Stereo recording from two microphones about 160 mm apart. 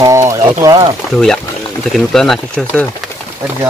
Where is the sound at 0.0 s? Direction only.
20° right (ahead or behind).